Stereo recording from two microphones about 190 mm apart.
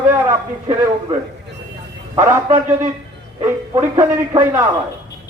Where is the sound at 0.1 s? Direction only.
15° right (ahead or behind).